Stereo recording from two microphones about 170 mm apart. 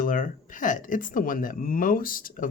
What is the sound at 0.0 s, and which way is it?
Speech, 55° left (ahead or behind).